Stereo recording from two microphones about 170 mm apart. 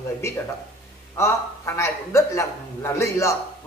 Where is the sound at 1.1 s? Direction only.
15° left (ahead or behind).